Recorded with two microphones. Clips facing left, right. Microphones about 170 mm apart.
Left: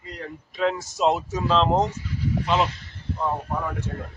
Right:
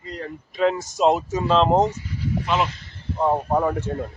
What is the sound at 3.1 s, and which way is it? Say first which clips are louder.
Speech: right 7 dB; 35° right (ahead or behind).